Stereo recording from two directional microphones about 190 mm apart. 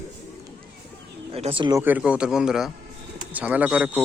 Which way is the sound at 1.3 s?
30° right (ahead or behind).